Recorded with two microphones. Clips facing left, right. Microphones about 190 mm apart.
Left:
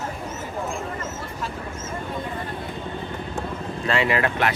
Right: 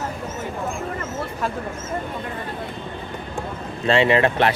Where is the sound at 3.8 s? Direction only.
25° right (ahead or behind).